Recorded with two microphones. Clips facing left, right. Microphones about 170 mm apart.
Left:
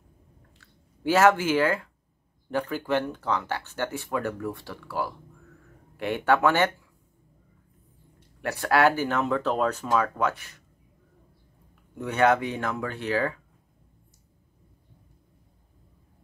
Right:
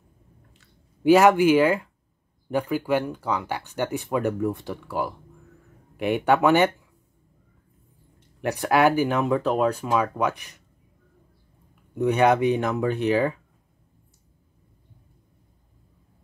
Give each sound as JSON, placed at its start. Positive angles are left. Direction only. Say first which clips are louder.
{"t": 0.6, "sound": "speech", "louder": "right 8 dB", "side_deg": -15}
{"t": 8.4, "sound": "speech", "louder": "right 2 dB", "side_deg": -15}
{"t": 11.9, "sound": "speech", "louder": "right 3 dB", "side_deg": -15}